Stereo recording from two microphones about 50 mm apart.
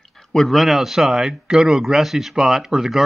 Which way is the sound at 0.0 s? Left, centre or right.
Centre.